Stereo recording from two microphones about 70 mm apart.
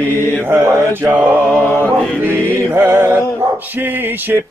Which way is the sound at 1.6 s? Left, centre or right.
Left.